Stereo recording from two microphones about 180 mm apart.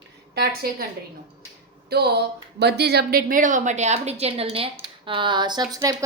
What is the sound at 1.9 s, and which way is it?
A woman's voice, 60° right (ahead or behind).